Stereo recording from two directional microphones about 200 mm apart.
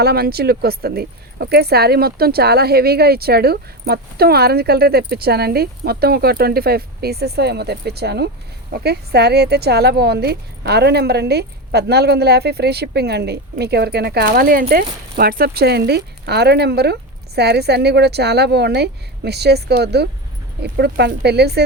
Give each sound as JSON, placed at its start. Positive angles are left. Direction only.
{"t": 0.0, "sound": "speech", "side_deg": -50}